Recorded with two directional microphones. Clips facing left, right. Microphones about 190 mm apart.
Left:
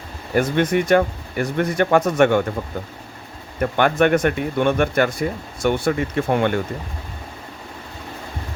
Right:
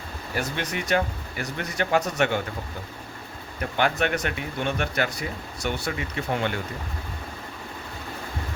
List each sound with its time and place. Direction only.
0.3 s speech: 50° left (ahead or behind)
3.6 s speech: 50° left (ahead or behind)